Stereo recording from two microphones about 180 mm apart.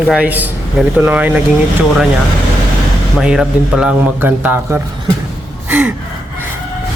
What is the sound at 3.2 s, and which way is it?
A man's voice, 5° right (ahead or behind).